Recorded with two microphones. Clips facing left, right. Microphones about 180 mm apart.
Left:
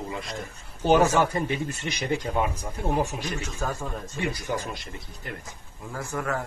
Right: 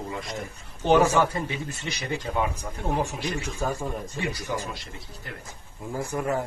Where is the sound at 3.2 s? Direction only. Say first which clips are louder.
Right 2 dB; 10° right (ahead or behind).